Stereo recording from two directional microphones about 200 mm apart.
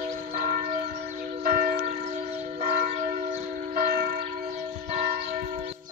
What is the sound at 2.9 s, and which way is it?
Church bell, 35° right (ahead or behind).